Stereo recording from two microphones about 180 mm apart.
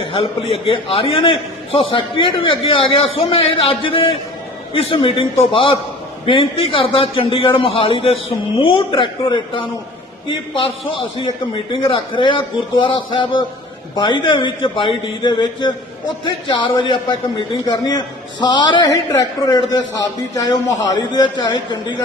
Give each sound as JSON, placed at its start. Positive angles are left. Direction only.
{"t": 0.0, "sound": "a man's voice", "side_deg": 30}